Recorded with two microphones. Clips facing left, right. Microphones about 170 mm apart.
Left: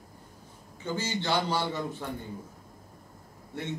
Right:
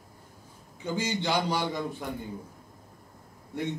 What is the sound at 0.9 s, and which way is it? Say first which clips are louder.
A man's voice: right 1 dB; 15° right (ahead or behind).